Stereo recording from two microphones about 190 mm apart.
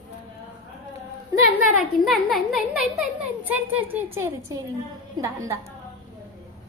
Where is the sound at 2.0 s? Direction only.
Centre (ahead or behind); by 5.7 s 15° right (ahead or behind).